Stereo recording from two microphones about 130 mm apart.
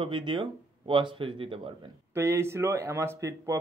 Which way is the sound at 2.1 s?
20° right (ahead or behind).